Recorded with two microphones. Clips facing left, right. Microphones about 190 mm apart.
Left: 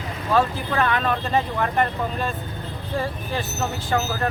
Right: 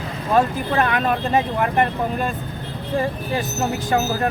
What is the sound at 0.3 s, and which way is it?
Speech, 15° right (ahead or behind).